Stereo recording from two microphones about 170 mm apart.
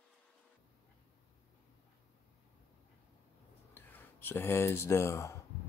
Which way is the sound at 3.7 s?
10° left (ahead or behind).